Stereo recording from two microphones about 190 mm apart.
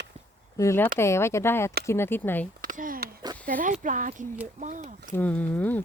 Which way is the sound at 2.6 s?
45° right (ahead or behind).